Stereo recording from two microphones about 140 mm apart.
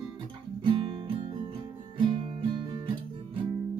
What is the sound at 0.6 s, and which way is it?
Music, 35° right (ahead or behind).